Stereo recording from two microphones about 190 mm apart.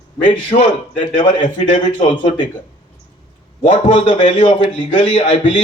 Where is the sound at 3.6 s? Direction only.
40° left (ahead or behind).